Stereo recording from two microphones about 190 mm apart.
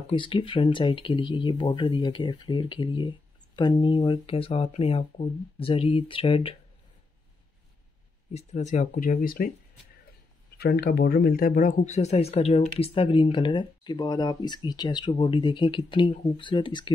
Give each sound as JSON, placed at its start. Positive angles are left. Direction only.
{"t": 0.1, "sound": "speech", "side_deg": 25}
{"t": 8.3, "sound": "speech", "side_deg": 35}
{"t": 10.6, "sound": "speech", "side_deg": 55}